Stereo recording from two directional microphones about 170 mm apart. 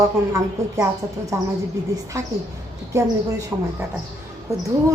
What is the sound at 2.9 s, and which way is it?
Speech, 15° right (ahead or behind).